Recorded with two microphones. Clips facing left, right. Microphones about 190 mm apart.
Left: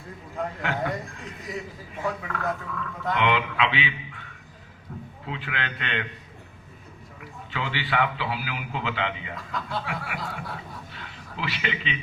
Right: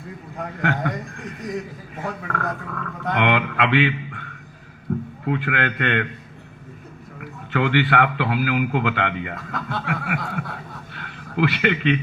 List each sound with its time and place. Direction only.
0.6 s a man's voice: 55° right (ahead or behind)
7.2 s speech: 60° right (ahead or behind)
10.9 s a sound: 55° right (ahead or behind)